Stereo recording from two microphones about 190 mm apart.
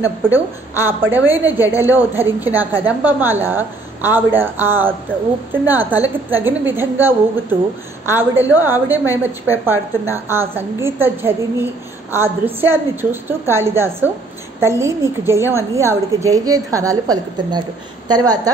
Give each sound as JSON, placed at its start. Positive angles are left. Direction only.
{"t": 0.0, "sound": "a woman's voice", "side_deg": -10}